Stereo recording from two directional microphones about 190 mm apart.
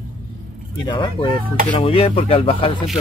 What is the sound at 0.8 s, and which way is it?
Speech, 25° left (ahead or behind).